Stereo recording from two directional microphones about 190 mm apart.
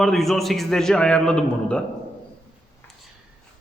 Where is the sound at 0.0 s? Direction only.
Centre (ahead or behind).